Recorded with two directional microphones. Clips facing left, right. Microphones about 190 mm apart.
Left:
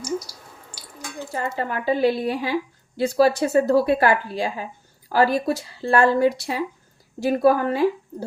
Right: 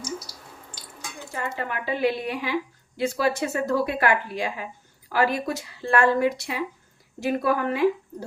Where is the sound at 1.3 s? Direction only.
35° left (ahead or behind).